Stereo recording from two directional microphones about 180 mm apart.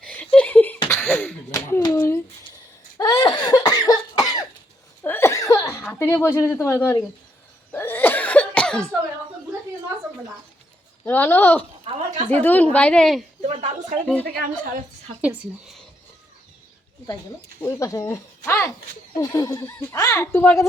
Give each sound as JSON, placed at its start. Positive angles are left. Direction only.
{"t": 0.0, "sound": "a sound", "side_deg": 5}
{"t": 3.0, "sound": "cough", "side_deg": 20}
{"t": 5.0, "sound": "laughter", "side_deg": 15}
{"t": 5.8, "sound": "speech", "side_deg": 10}
{"t": 7.7, "sound": "cough", "side_deg": 10}
{"t": 11.0, "sound": "speech", "side_deg": 10}
{"t": 11.9, "sound": "a sound", "side_deg": -40}
{"t": 12.3, "sound": "speech", "side_deg": 10}
{"t": 13.4, "sound": "a sound", "side_deg": -35}
{"t": 14.3, "sound": "a woman's voice", "side_deg": -60}
{"t": 15.2, "sound": "speech", "side_deg": -5}
{"t": 17.6, "sound": "speech", "side_deg": 15}